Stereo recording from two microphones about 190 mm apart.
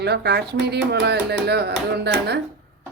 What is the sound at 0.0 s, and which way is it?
Speech, 60° right (ahead or behind).